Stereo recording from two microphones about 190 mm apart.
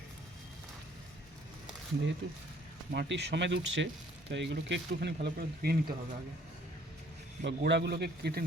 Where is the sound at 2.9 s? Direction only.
60° right (ahead or behind).